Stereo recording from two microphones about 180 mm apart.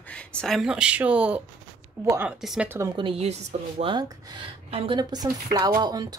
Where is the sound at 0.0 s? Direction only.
5° left (ahead or behind); by 2.9 s 10° right (ahead or behind).